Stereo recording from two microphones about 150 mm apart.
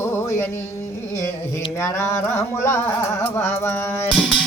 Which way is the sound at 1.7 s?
15° left (ahead or behind).